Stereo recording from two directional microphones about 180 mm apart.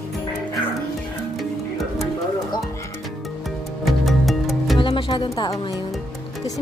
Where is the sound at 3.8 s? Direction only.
Centre (ahead or behind).